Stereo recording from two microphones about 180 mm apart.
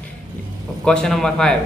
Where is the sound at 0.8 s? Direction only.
5° left (ahead or behind).